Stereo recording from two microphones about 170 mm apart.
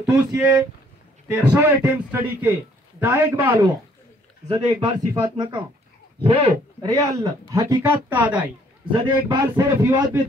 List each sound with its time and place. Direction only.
0.0 s a man's voice: 10° right (ahead or behind)
4.5 s a man's voice: 25° right (ahead or behind)
6.9 s a man's voice: 20° right (ahead or behind)
8.9 s a man's voice: 25° right (ahead or behind)